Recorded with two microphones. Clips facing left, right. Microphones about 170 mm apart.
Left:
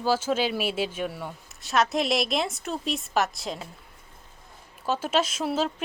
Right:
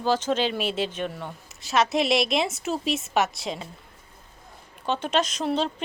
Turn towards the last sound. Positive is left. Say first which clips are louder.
# right 1 dB
turn(degrees=5)  # may be behind; listen again after turning